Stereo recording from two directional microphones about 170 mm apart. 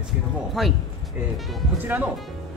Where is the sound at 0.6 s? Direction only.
Centre (ahead or behind).